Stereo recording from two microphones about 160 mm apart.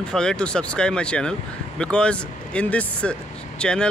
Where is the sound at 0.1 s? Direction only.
5° left (ahead or behind).